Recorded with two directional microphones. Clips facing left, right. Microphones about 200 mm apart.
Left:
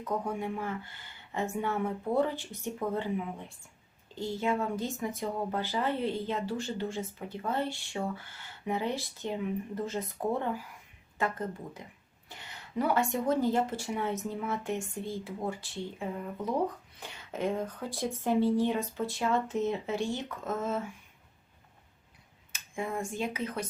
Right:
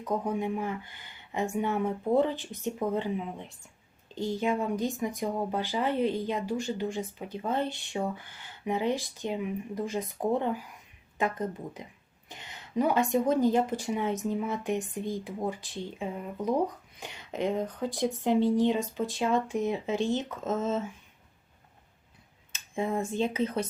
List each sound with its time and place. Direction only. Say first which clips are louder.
0.0 s speech: right 3 dB; 20° right (ahead or behind)
22.5 s speech: right 5 dB; 25° right (ahead or behind)